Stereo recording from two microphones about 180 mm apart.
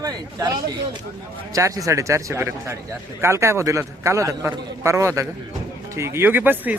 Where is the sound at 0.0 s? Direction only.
20° right (ahead or behind).